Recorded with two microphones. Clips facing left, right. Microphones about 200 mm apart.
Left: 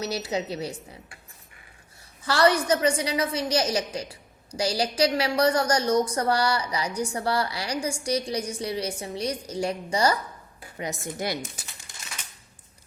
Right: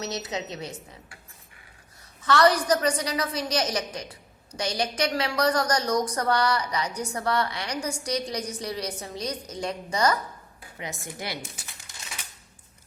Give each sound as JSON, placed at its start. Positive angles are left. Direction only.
{"t": 0.0, "sound": "a woman's voice", "side_deg": 30}
{"t": 2.2, "sound": "a woman's voice", "side_deg": 30}
{"t": 10.8, "sound": "speech", "side_deg": 45}